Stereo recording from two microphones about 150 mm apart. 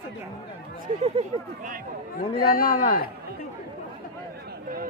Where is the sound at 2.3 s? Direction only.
80° left.